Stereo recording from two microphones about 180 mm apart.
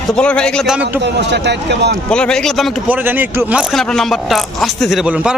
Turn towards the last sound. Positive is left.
turn(degrees=-5)  # may be behind; listen again after turning